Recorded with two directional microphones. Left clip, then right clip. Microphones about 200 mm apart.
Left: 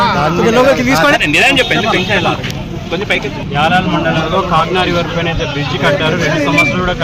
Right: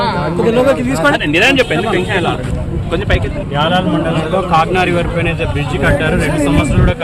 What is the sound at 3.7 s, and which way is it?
A man's voice, 20° right (ahead or behind).